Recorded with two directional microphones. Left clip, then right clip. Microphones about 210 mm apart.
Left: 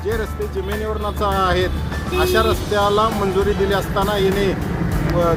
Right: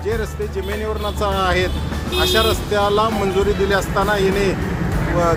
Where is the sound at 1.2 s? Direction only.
5° left (ahead or behind).